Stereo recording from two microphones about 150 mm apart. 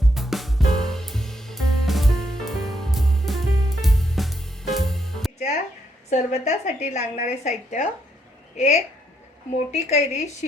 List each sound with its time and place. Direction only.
0.0 s music: centre (ahead or behind)
6.1 s a woman's voice: 50° left (ahead or behind)